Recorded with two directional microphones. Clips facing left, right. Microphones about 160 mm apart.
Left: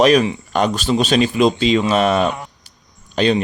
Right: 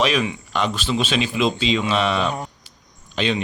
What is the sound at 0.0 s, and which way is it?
Speech, 40° left (ahead or behind).